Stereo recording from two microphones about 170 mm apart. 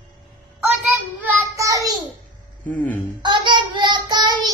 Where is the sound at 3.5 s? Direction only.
25° right (ahead or behind).